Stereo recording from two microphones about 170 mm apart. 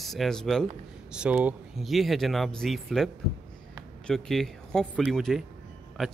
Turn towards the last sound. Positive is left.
turn(degrees=0)  # may be behind; listen again after turning